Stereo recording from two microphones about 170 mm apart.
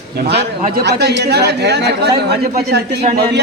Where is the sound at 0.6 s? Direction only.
65° right (ahead or behind).